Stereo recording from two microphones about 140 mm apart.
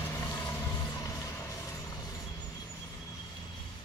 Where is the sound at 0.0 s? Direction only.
20° left (ahead or behind).